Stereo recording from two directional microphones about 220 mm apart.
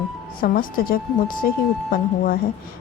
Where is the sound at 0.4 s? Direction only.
40° left (ahead or behind).